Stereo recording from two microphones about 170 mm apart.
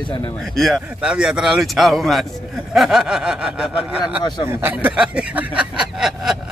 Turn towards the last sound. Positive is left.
turn(degrees=-5)  # may be behind; listen again after turning